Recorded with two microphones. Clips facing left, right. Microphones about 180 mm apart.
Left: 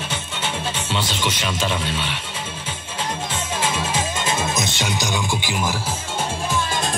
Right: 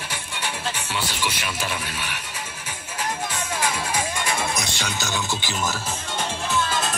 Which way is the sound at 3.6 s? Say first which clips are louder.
Left 2 dB; 25° left (ahead or behind).